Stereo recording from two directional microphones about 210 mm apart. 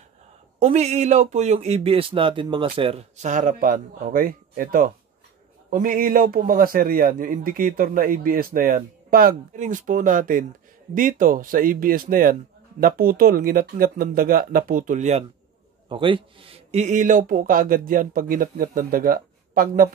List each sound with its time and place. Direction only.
0.6 s a man's voice: 30° right (ahead or behind)